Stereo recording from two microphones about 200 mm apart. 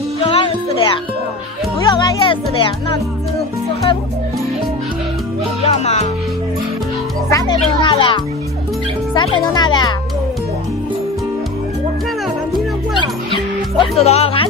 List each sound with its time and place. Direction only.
0.2 s music: 30° left (ahead or behind)
1.9 s speech: 20° left (ahead or behind)
5.6 s speech: 35° left (ahead or behind)
7.2 s music: 15° left (ahead or behind)
7.6 s speech: 25° left (ahead or behind)
9.5 s speech: 20° left (ahead or behind)
13.3 s music: 30° left (ahead or behind)